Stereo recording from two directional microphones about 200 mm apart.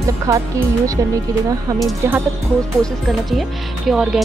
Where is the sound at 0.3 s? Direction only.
15° right (ahead or behind).